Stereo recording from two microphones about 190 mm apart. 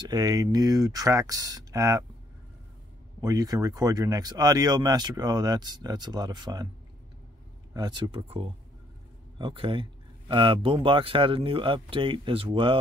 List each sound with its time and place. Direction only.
0.1 s speech: 20° right (ahead or behind)
3.2 s speech: 15° right (ahead or behind)
7.7 s speech: 20° right (ahead or behind)